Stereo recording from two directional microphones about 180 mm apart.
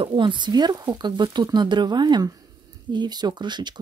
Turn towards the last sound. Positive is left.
turn(degrees=-25)  # may be behind; listen again after turning